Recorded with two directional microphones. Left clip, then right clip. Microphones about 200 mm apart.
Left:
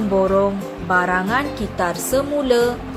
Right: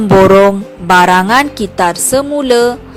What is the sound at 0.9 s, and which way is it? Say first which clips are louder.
A woman's voice: right 11 dB; 55° right (ahead or behind).